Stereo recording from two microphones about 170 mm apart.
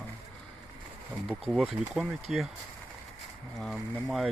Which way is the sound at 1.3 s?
Centre (ahead or behind).